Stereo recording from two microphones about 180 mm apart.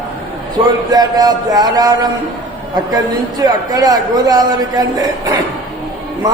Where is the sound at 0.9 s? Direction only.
20° right (ahead or behind).